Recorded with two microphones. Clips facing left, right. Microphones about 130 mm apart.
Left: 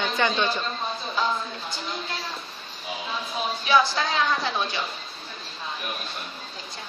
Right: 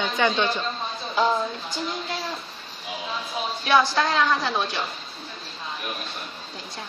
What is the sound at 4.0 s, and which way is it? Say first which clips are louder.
Speech: right 3 dB; 70° right (ahead or behind).